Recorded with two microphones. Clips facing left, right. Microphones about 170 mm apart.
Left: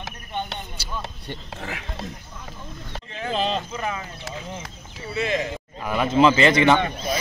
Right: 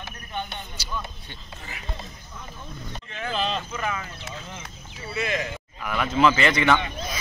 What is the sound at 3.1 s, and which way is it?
Speech, 35° left (ahead or behind).